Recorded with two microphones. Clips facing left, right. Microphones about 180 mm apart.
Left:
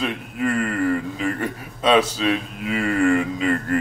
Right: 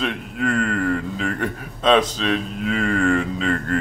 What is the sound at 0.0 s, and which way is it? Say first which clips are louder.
A man's voice: even; 5° left (ahead or behind).